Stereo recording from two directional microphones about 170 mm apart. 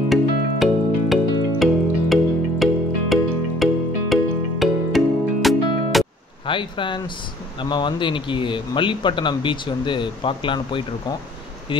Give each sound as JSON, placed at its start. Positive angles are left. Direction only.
{"t": 0.1, "sound": "music", "side_deg": 0}
{"t": 6.4, "sound": "a man's voice", "side_deg": 30}